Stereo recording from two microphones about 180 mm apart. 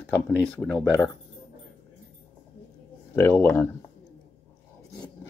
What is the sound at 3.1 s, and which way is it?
Speech, 10° left (ahead or behind).